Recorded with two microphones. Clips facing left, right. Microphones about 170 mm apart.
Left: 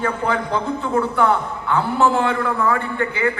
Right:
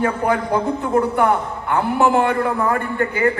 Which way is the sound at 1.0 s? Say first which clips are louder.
Right 1 dB; 50° right (ahead or behind).